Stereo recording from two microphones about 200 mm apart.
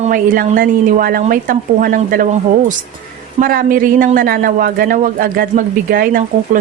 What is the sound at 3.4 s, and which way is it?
A man's voice, 45° right (ahead or behind).